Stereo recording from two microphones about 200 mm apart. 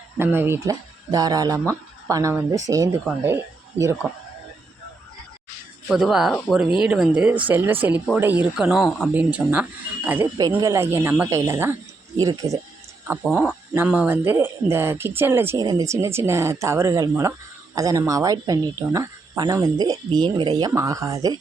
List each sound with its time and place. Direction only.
0.2 s speech: 10° right (ahead or behind)
5.9 s speech: 5° right (ahead or behind)
13.1 s speech: 5° right (ahead or behind)